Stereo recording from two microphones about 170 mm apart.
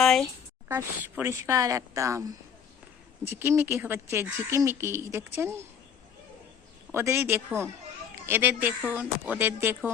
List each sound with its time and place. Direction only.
0.0 s speech: centre (ahead or behind)
0.7 s speech: 15° right (ahead or behind)
6.9 s speech: 15° right (ahead or behind)